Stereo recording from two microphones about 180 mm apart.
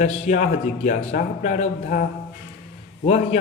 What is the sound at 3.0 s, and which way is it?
Speech, 40° left (ahead or behind).